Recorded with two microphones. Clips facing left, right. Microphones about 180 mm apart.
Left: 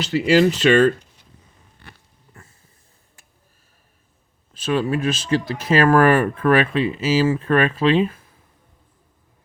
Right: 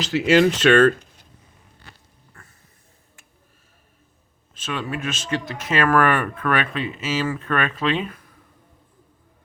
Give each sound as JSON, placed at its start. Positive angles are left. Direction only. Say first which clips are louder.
{"t": 0.0, "sound": "speech", "louder": "left 1 dB", "side_deg": 0}
{"t": 2.3, "sound": "a sound", "louder": "left 3 dB", "side_deg": 20}
{"t": 4.5, "sound": "speech", "louder": "left 8 dB", "side_deg": 35}